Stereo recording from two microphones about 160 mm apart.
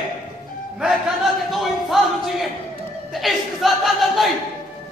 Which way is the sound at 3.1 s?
Centre (ahead or behind).